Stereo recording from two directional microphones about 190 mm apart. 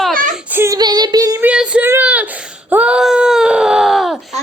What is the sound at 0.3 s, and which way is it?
Child singing, 10° right (ahead or behind).